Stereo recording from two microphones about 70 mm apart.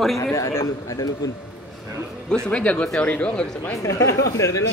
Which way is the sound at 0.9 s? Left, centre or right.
Left.